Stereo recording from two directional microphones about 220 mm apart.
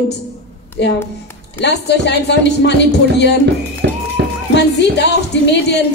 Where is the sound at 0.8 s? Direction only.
50° left (ahead or behind).